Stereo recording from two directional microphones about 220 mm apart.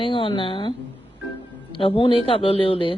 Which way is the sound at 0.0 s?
25° left (ahead or behind).